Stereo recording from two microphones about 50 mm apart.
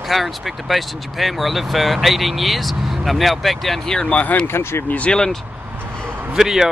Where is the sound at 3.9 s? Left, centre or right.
Left.